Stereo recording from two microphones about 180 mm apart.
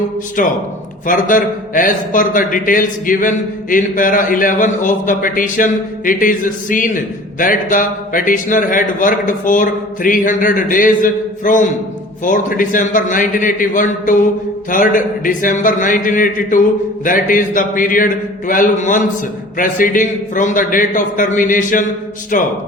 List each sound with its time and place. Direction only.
0.4 s a man's voice: 50° left (ahead or behind)